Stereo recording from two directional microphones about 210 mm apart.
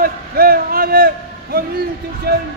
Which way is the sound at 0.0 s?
45° right (ahead or behind).